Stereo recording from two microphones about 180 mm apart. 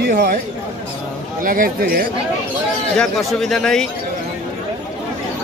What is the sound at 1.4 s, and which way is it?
Speech, 50° right (ahead or behind).